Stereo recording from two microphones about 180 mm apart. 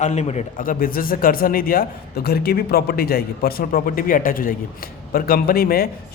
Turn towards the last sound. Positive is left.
turn(degrees=55)  # may be behind; listen again after turning